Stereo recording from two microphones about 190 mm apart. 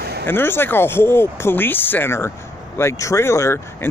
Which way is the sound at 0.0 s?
60° right (ahead or behind).